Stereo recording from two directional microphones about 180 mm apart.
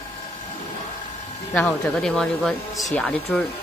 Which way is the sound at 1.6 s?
5° left (ahead or behind).